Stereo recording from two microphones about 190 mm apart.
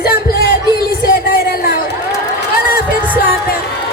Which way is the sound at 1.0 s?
55° left (ahead or behind).